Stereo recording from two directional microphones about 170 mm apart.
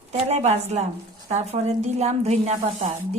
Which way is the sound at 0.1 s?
40° right (ahead or behind).